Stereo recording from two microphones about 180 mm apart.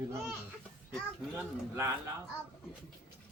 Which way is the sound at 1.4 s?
15° right (ahead or behind).